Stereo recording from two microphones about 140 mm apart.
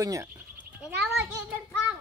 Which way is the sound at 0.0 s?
20° right (ahead or behind).